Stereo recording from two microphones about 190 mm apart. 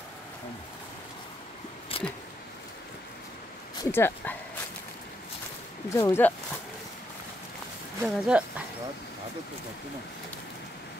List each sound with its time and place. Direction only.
1.9 s a sound: 30° left (ahead or behind)
3.9 s dog: 10° left (ahead or behind)
5.9 s speech: 15° left (ahead or behind)
8.0 s speech: 5° right (ahead or behind)